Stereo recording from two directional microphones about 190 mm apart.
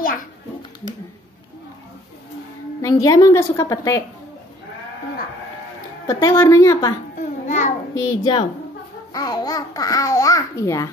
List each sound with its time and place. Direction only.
2.8 s a child's voice: 15° left (ahead or behind)
6.0 s a child's voice: 15° left (ahead or behind)
7.2 s a sound: 40° left (ahead or behind)
8.0 s a woman's voice: 20° left (ahead or behind)